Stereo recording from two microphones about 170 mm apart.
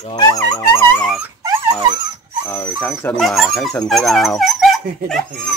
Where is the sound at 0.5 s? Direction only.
15° left (ahead or behind).